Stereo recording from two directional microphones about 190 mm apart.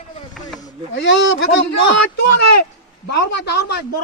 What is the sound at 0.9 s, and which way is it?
Speech, 80° left.